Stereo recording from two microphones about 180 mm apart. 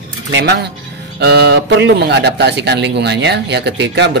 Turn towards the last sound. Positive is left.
turn(degrees=-70)  # may be behind; listen again after turning